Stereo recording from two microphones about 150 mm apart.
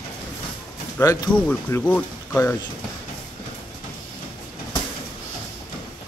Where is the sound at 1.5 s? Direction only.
10° left (ahead or behind).